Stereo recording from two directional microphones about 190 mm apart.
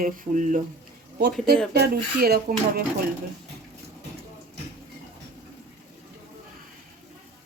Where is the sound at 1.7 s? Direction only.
60° right (ahead or behind).